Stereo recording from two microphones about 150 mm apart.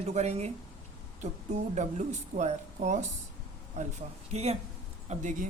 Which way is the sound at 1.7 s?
55° right (ahead or behind).